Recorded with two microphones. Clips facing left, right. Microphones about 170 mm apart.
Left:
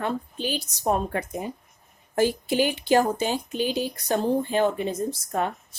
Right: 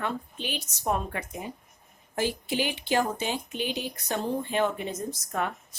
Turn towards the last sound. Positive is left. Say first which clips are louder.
# left 4 dB
turn(degrees=30)  # may be behind; listen again after turning